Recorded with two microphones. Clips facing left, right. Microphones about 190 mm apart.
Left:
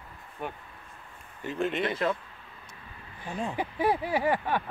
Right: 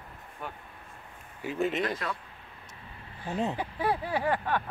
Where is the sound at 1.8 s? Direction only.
25° left (ahead or behind).